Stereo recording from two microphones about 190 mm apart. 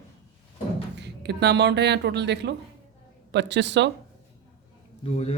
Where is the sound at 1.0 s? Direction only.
65° right (ahead or behind).